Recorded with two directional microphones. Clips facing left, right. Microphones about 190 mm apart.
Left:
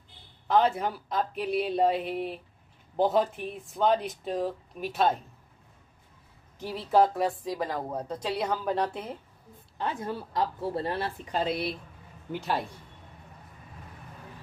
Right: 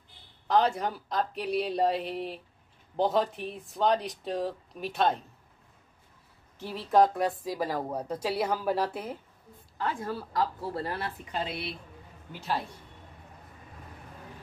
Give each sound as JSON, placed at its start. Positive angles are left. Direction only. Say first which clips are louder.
{"t": 0.5, "sound": "speech", "louder": "left 1 dB", "side_deg": 0}
{"t": 6.6, "sound": "speech", "louder": "even", "side_deg": 5}
{"t": 9.8, "sound": "speech", "louder": "even", "side_deg": 20}